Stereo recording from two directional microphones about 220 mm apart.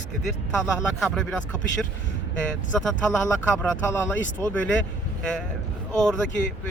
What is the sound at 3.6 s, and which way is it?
Speech, 5° left (ahead or behind).